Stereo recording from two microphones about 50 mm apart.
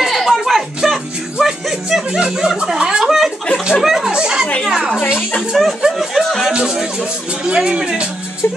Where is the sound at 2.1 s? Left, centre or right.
Centre.